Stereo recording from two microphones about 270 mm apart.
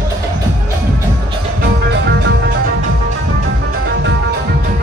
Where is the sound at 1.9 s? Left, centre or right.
Right.